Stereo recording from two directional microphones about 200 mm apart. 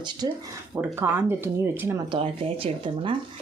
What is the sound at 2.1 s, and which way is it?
Speech, 25° right (ahead or behind).